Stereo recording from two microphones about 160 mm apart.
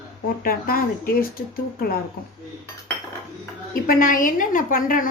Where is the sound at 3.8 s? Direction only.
60° left (ahead or behind).